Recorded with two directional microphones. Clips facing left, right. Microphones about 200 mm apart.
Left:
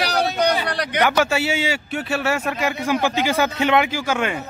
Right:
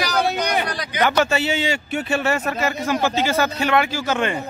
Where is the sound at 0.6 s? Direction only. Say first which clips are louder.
Left 3 dB; 65° left (ahead or behind).